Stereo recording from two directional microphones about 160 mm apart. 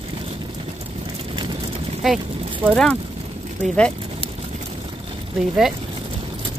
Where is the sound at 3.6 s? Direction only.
5° left (ahead or behind).